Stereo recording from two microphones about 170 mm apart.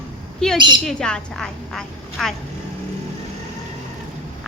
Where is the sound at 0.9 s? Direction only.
5° left (ahead or behind).